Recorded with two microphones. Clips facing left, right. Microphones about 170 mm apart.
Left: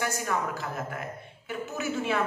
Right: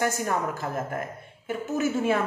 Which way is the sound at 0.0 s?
45° right (ahead or behind).